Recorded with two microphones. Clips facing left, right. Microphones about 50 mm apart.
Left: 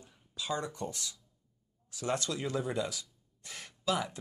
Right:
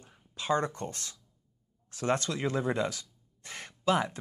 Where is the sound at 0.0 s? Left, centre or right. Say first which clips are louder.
Right 2 dB; right.